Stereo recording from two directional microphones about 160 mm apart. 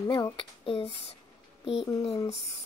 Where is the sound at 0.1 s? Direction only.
30° left (ahead or behind).